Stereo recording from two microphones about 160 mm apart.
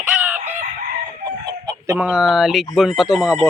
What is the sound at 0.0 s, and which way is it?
Chicken, 10° right (ahead or behind).